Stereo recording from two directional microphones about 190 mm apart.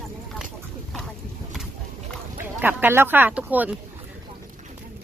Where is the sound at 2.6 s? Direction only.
10° right (ahead or behind).